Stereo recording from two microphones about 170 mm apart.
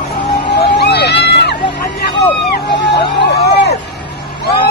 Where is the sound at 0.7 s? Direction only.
75° left (ahead or behind).